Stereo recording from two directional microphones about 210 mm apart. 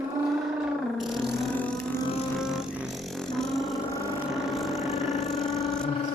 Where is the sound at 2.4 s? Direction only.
5° right (ahead or behind).